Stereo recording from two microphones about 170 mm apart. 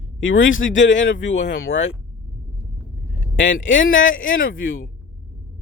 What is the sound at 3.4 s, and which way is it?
Speech, 90° left.